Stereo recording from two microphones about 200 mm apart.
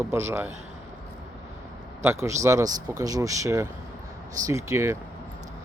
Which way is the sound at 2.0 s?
15° right (ahead or behind).